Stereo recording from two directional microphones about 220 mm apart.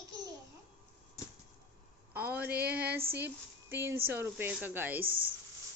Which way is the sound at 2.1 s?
10° right (ahead or behind).